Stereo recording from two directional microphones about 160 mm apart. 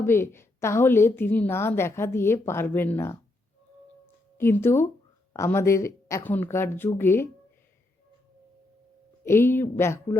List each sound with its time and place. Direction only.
0.0 s a woman's voice: 15° left (ahead or behind)
4.4 s a woman's voice: 15° left (ahead or behind)
9.2 s a woman's voice: 15° left (ahead or behind)